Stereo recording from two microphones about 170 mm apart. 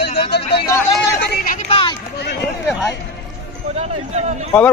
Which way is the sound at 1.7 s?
30° left (ahead or behind).